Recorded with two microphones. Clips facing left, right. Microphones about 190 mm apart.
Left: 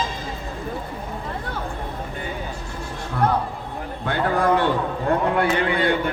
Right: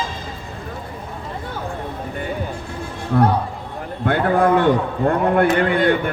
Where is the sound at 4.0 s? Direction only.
55° right (ahead or behind).